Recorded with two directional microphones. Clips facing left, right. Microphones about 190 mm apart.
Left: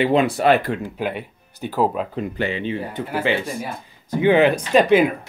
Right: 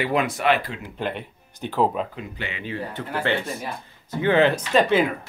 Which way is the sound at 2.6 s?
15° left (ahead or behind).